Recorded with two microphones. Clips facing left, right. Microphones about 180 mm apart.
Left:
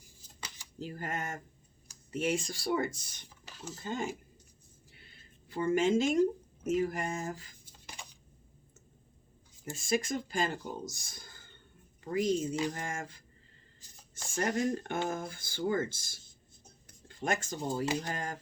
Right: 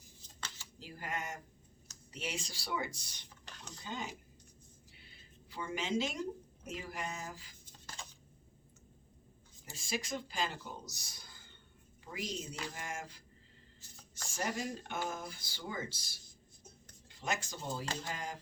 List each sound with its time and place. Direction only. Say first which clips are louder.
0.3 s a sound: left 1 dB; 15° left (ahead or behind)
0.8 s speech: left 5 dB; 50° left (ahead or behind)
3.2 s a sound: left 8 dB; 5° left (ahead or behind)
3.8 s speech: left 7 dB; 50° left (ahead or behind)
4.9 s a sound: left 1 dB; 50° left (ahead or behind)
6.7 s speech: left 10 dB; 50° left (ahead or behind)
7.6 s a sound: left 1 dB; 15° left (ahead or behind)
9.6 s speech: left 8 dB; 50° left (ahead or behind)
14.3 s speech: left 7 dB; 50° left (ahead or behind)
17.2 s speech: left 6 dB; 50° left (ahead or behind)
17.8 s speech: left 8 dB; 15° left (ahead or behind)
18.1 s speech: left 4 dB; 50° left (ahead or behind)